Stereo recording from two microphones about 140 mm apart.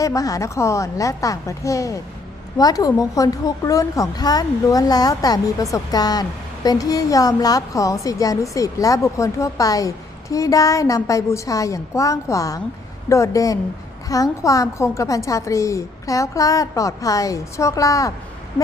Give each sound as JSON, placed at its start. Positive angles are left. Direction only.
{"t": 0.0, "sound": "a woman's voice", "side_deg": 25}